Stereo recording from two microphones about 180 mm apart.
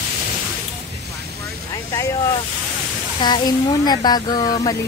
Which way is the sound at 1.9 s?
15° left (ahead or behind).